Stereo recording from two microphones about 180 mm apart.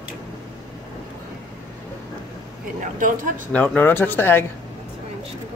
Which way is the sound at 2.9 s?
45° right (ahead or behind).